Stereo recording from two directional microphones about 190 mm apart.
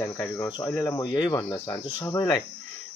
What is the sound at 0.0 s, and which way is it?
Speech, 15° left (ahead or behind).